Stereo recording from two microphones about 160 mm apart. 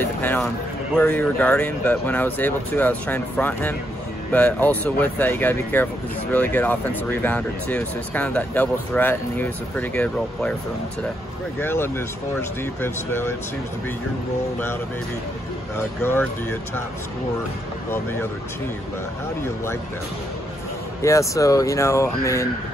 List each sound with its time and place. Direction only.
0.0 s speech: 10° left (ahead or behind)
11.6 s speech: 15° left (ahead or behind)
16.0 s speech: 15° left (ahead or behind)
21.0 s speech: 20° left (ahead or behind)